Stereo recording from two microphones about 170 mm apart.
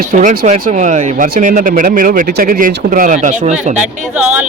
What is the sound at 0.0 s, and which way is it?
Speech, 50° right (ahead or behind).